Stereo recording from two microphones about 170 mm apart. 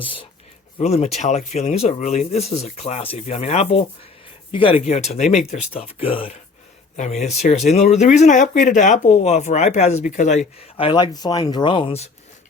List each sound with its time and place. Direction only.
0.8 s speech: 40° left (ahead or behind)
6.9 s speech: 45° left (ahead or behind)